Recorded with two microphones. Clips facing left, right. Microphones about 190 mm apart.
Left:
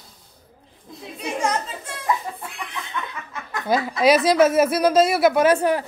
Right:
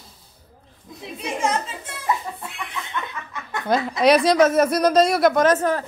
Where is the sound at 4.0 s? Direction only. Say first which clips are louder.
Even; 5° left (ahead or behind).